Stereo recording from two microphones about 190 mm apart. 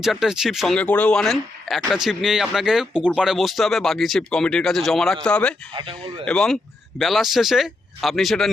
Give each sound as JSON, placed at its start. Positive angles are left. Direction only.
{"t": 0.0, "sound": "speech", "side_deg": 0}
{"t": 5.7, "sound": "speech", "side_deg": -30}
{"t": 6.2, "sound": "speech", "side_deg": 5}